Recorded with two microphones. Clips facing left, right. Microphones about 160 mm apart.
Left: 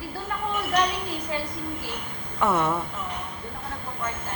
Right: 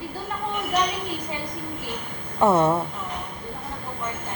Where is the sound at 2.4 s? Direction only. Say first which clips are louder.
Right 5 dB; 20° right (ahead or behind).